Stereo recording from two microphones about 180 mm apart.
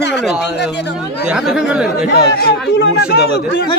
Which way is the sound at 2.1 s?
60° left (ahead or behind).